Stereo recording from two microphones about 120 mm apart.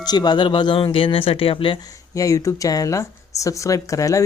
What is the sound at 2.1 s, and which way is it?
Speech, 25° left (ahead or behind).